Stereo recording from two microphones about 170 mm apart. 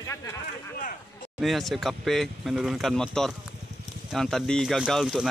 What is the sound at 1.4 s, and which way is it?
Speech, centre (ahead or behind).